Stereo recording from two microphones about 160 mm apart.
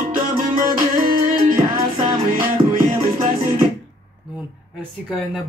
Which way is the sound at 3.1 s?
35° right (ahead or behind).